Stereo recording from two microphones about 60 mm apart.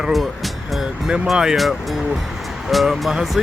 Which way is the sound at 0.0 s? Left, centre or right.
Centre.